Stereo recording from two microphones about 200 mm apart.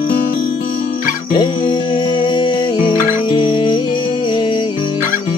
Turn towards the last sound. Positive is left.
turn(degrees=25)  # may be behind; listen again after turning